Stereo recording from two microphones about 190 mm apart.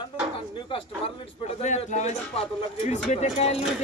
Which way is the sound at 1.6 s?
40° left (ahead or behind).